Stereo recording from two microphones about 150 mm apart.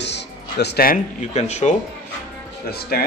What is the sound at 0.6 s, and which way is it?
Speech, 85° left.